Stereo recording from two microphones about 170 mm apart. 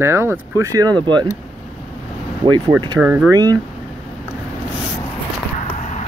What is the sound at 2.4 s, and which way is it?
Speech, 25° right (ahead or behind).